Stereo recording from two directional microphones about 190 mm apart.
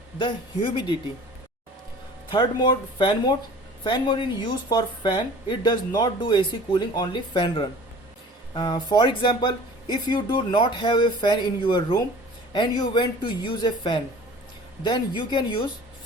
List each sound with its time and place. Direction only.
0.2 s speech: 25° left (ahead or behind)
2.3 s speech: 25° left (ahead or behind)